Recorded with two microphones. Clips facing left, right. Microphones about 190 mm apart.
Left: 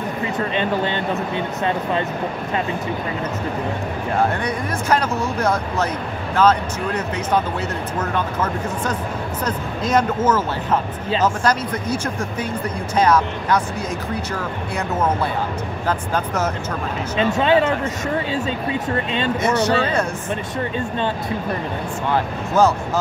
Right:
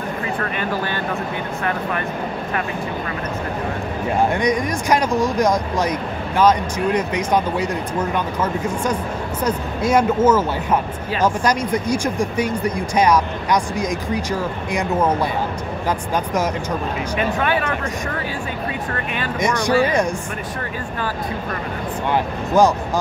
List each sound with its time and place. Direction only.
1.6 s speech: 20° left (ahead or behind)
4.3 s speech: 15° right (ahead or behind)
17.4 s speech: 25° left (ahead or behind)
19.4 s speech: 15° right (ahead or behind)
22.1 s speech: 15° right (ahead or behind)